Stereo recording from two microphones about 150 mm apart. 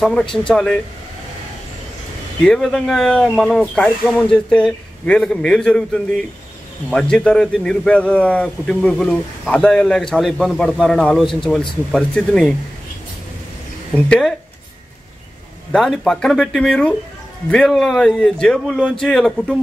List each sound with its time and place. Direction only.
0.0 s a man's voice: 5° left (ahead or behind)
2.4 s a man's voice: 5° left (ahead or behind)
6.9 s a man's voice: 5° left (ahead or behind)
13.9 s speech: 10° left (ahead or behind)
15.7 s a man's voice: 5° left (ahead or behind)